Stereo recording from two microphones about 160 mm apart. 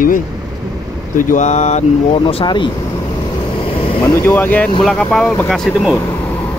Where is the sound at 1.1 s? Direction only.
50° left (ahead or behind); by 2.7 s 30° left (ahead or behind).